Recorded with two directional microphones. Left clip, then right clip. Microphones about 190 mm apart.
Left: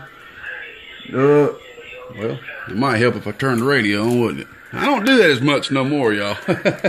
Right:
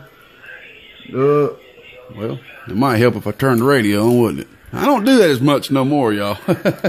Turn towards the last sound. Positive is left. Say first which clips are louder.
# right 1 dB
turn(degrees=-35)  # may be behind; listen again after turning